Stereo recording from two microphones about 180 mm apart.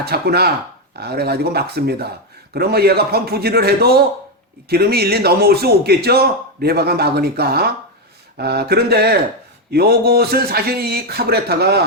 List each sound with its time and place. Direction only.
0.0 s speech: 60° right (ahead or behind)